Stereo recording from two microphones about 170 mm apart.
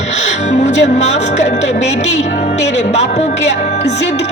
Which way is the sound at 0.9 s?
40° left (ahead or behind).